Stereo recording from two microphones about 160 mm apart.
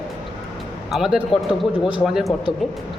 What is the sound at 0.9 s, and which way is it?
Speech, centre (ahead or behind).